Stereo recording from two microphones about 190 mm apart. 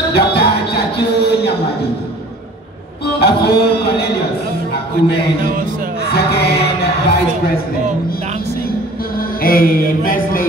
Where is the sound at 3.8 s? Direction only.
55° left (ahead or behind).